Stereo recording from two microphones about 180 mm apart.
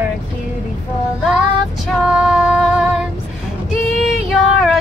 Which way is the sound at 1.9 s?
5° right (ahead or behind).